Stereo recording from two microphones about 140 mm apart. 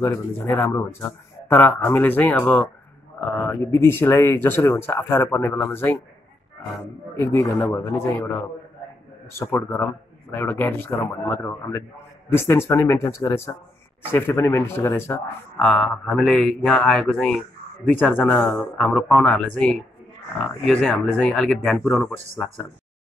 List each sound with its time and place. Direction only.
0.0 s speech: 20° left (ahead or behind)
7.2 s speech: 15° left (ahead or behind)
10.3 s speech: 15° left (ahead or behind)
15.6 s speech: 5° left (ahead or behind)
17.9 s speech: 15° left (ahead or behind)
18.6 s speech: centre (ahead or behind); by 22.1 s 15° left (ahead or behind)